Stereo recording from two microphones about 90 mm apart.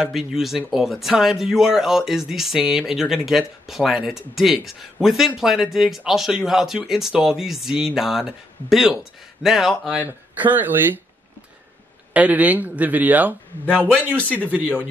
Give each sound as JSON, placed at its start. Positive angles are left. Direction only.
{"t": 0.0, "sound": "speech", "side_deg": -5}
{"t": 10.0, "sound": "a man's voice", "side_deg": -20}
{"t": 12.1, "sound": "a man's voice", "side_deg": -15}